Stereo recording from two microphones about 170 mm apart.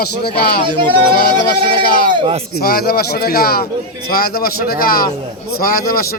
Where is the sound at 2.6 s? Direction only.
65° left (ahead or behind).